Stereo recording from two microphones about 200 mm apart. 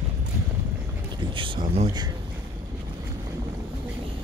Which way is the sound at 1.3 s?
25° right (ahead or behind).